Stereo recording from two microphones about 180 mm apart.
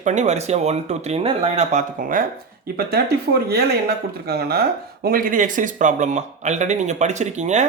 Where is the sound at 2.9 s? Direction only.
60° right (ahead or behind); by 7.7 s 40° right (ahead or behind).